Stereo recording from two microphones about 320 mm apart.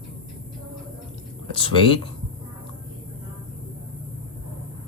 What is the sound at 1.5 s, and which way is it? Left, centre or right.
Speech, centre.